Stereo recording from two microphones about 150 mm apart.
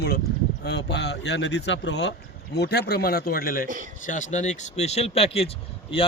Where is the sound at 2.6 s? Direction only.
90° left; by 3.7 s 75° left (ahead or behind).